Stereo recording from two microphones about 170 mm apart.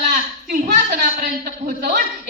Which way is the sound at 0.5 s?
55° right (ahead or behind).